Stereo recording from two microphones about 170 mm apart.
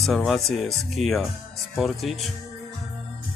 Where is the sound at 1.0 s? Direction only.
40° right (ahead or behind).